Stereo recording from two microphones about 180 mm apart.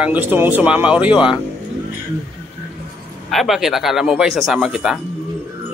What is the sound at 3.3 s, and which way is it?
Speech, centre (ahead or behind).